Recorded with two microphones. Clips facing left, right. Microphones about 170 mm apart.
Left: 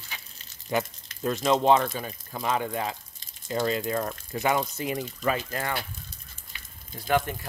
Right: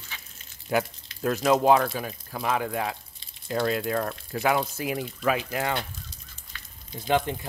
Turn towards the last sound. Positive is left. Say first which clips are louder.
# right 1 dB
turn(degrees=-20)  # may be behind; listen again after turning